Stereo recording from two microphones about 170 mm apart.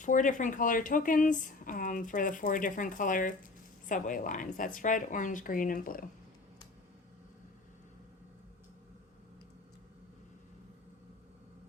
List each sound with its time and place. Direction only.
0.0 s speech: 50° left (ahead or behind)